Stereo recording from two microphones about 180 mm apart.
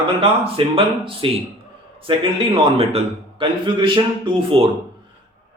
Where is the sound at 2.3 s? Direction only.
30° right (ahead or behind).